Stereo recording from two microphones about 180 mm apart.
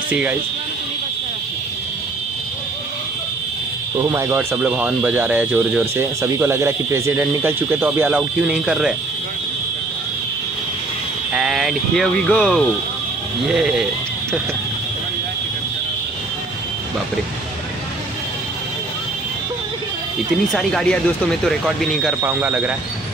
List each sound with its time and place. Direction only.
0.1 s speech: 10° right (ahead or behind)
4.0 s speech: 15° right (ahead or behind)
11.3 s speech: 5° right (ahead or behind)
20.5 s speech: 5° left (ahead or behind)